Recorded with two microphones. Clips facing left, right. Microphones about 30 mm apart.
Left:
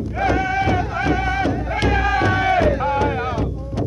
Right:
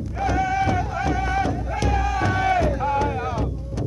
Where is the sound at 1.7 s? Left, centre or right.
Left.